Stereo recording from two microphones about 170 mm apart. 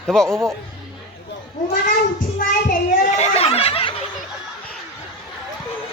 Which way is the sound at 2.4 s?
55° left (ahead or behind).